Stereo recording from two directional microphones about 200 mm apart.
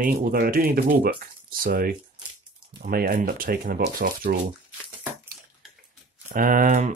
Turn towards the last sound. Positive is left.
turn(degrees=-35)  # may be behind; listen again after turning